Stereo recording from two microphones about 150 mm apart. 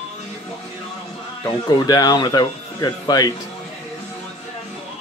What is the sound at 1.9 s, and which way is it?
Speech, 25° left (ahead or behind).